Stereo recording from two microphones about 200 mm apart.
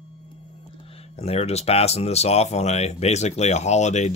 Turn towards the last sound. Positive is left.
turn(degrees=35)  # may be behind; listen again after turning